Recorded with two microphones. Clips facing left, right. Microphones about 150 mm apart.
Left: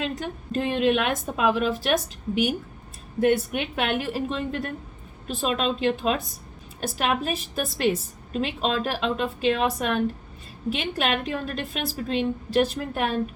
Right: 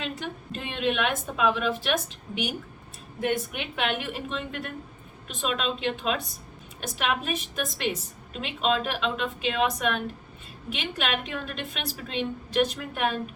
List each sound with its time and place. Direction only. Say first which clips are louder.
0.0 s a woman's voice: left 4 dB; 40° left (ahead or behind)